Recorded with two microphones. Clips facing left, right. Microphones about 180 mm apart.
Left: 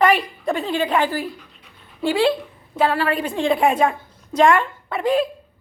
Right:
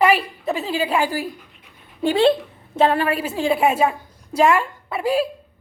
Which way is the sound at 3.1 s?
5° right (ahead or behind).